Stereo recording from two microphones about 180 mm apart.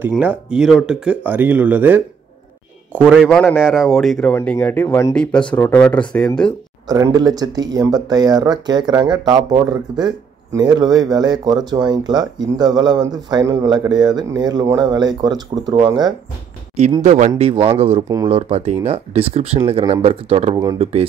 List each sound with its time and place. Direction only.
0.1 s speech: 5° right (ahead or behind)
6.9 s speech: 20° right (ahead or behind)
17.0 s speech: 40° right (ahead or behind)
18.0 s speech: 15° right (ahead or behind)
18.3 s speech: 35° right (ahead or behind)